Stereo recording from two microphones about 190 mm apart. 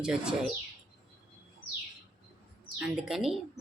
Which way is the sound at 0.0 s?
5° right (ahead or behind).